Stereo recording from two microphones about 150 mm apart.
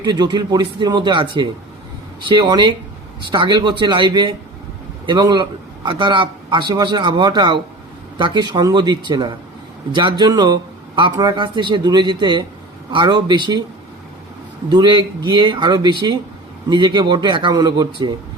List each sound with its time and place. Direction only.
0.0 s a man's voice: 30° right (ahead or behind)
14.7 s a man's voice: 30° right (ahead or behind)